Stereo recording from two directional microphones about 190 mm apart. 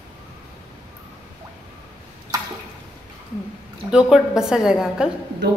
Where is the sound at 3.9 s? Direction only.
5° right (ahead or behind).